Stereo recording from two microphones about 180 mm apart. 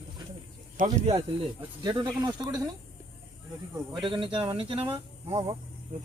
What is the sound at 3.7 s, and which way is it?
Speech, 25° right (ahead or behind).